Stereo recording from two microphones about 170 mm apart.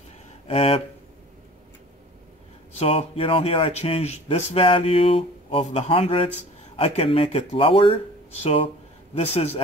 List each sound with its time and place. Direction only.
0.5 s speech: 35° left (ahead or behind)
2.8 s speech: 35° left (ahead or behind)